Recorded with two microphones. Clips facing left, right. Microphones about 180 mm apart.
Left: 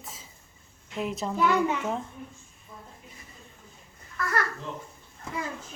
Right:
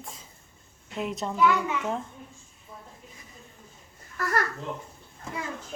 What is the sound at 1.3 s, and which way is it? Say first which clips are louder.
Speech: even; 40° left (ahead or behind).